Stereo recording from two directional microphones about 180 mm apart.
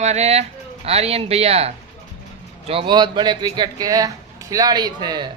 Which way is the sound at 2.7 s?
30° right (ahead or behind).